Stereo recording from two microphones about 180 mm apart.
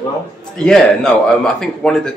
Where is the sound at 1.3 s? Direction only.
Centre (ahead or behind).